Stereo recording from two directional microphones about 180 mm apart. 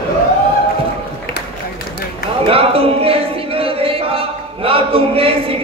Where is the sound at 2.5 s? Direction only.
30° right (ahead or behind).